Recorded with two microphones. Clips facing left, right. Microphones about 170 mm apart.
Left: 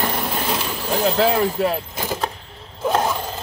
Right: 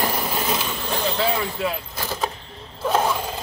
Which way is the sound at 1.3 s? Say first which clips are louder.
Left 6 dB; 40° left (ahead or behind).